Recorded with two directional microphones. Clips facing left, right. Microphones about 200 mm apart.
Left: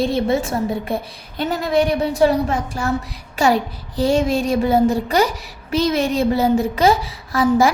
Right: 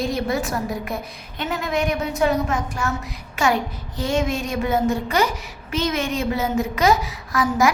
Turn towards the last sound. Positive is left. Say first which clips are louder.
# left 4 dB
turn(degrees=30)  # may be behind; listen again after turning